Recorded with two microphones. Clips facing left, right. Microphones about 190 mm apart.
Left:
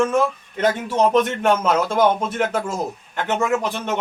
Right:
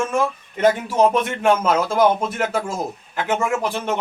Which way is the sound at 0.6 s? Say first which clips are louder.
Right 2 dB; 5° right (ahead or behind).